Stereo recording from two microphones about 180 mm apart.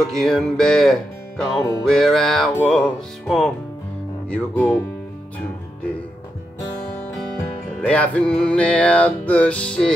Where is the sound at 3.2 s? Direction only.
Centre (ahead or behind).